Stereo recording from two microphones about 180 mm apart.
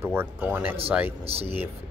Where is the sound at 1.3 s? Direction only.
35° right (ahead or behind).